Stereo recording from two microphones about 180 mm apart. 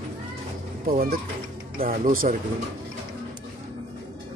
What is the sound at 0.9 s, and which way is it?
Speech, 55° right (ahead or behind).